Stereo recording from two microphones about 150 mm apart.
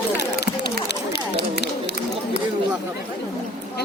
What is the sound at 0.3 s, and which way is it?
Run, 90° left.